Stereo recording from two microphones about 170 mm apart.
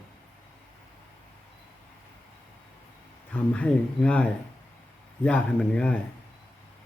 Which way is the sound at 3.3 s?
5° left (ahead or behind).